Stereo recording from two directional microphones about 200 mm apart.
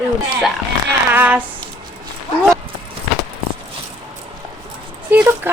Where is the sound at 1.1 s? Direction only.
10° right (ahead or behind).